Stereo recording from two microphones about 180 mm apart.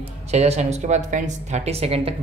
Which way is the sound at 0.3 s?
35° right (ahead or behind).